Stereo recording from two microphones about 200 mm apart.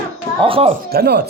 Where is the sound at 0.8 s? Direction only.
50° right (ahead or behind).